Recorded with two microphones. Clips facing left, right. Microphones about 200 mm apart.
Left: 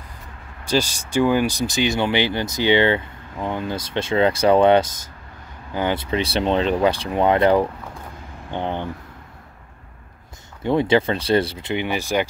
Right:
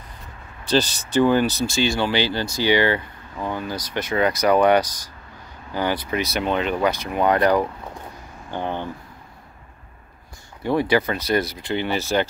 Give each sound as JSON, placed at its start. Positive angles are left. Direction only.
{"t": 0.7, "sound": "speech", "side_deg": 10}
{"t": 10.6, "sound": "speech", "side_deg": 20}
{"t": 11.7, "sound": "speech", "side_deg": 15}